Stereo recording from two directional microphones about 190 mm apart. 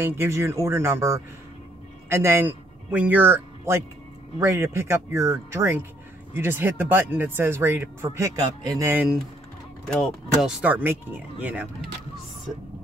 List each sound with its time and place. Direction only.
0.0 s speech: 10° right (ahead or behind)
9.8 s speech: 5° left (ahead or behind)